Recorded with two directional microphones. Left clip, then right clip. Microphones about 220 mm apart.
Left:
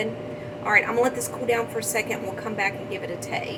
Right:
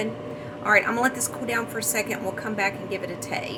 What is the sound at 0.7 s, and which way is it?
A woman's voice, 40° right (ahead or behind).